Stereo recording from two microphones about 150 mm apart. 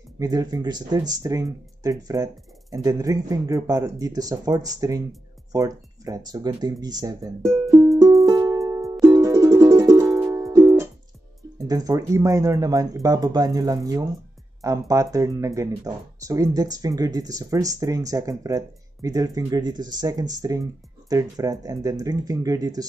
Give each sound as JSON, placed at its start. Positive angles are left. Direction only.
{"t": 0.2, "sound": "speech", "side_deg": -25}
{"t": 8.3, "sound": "music", "side_deg": -20}
{"t": 11.6, "sound": "speech", "side_deg": -25}